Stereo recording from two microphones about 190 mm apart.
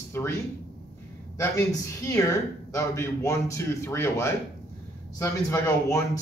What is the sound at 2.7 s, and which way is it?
Speech, 15° left (ahead or behind).